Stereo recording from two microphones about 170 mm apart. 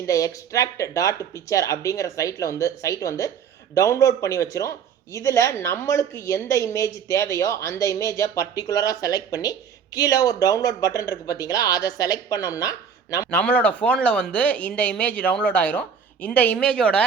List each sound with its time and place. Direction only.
0.0 s a woman's voice: 20° left (ahead or behind)